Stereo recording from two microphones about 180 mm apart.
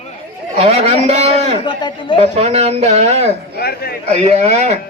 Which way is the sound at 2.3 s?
35° right (ahead or behind).